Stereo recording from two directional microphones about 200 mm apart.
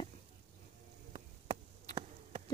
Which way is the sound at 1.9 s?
35° right (ahead or behind).